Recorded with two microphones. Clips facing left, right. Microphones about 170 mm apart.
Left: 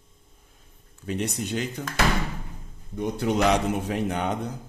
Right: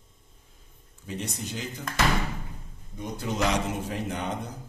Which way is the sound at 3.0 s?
65° left (ahead or behind).